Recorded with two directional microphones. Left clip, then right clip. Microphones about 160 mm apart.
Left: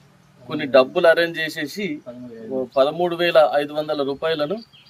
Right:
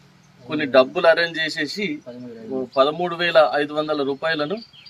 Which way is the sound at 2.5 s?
Centre (ahead or behind).